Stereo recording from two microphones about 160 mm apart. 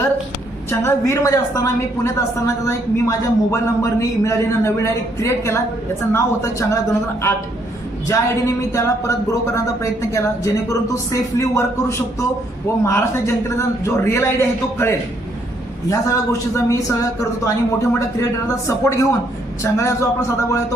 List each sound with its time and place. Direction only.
0.7 s a woman's voice: 15° left (ahead or behind)